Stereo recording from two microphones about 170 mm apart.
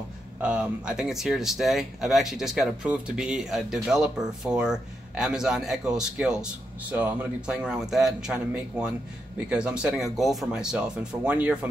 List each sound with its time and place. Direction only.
0.4 s speech: 5° right (ahead or behind)